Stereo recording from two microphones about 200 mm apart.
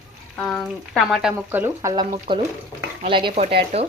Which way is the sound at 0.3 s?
Centre (ahead or behind).